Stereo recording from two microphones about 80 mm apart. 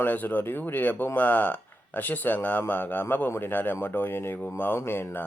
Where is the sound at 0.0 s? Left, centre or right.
Left.